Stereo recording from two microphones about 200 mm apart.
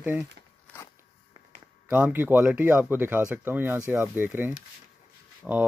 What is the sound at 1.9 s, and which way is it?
Speech, 10° right (ahead or behind).